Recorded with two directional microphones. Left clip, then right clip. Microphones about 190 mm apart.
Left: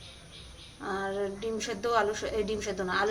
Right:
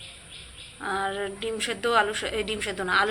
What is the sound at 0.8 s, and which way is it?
A woman's voice, 5° left (ahead or behind).